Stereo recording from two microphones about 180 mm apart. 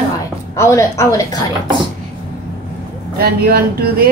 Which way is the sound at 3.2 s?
60° right (ahead or behind).